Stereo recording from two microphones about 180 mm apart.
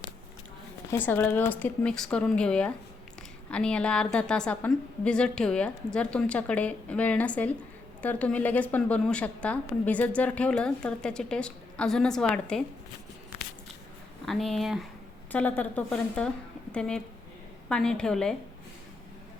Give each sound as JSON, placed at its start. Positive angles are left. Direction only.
{"t": 0.9, "sound": "a woman's voice", "side_deg": 10}
{"t": 14.3, "sound": "a woman's voice", "side_deg": 0}